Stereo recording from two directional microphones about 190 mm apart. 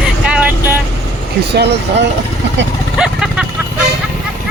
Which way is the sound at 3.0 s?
5° right (ahead or behind).